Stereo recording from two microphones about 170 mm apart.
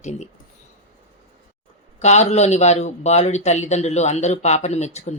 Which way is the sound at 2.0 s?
40° left (ahead or behind).